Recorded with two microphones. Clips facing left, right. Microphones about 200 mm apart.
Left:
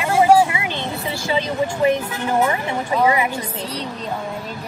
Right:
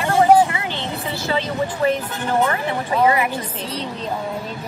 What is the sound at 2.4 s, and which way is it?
Speech, 15° left (ahead or behind).